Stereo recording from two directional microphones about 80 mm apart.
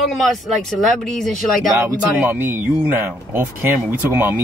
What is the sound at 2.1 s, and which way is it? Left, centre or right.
Speech, right.